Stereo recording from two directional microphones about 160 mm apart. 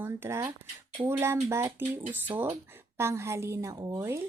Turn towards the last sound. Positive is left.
turn(degrees=-20)  # may be behind; listen again after turning